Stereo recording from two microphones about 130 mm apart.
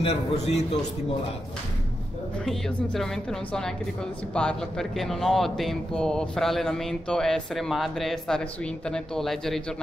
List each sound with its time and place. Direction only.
0.0 s a man's voice: 55° left (ahead or behind)
2.4 s a man's voice: 5° left (ahead or behind)